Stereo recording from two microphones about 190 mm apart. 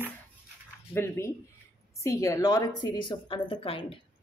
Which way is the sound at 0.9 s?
15° left (ahead or behind).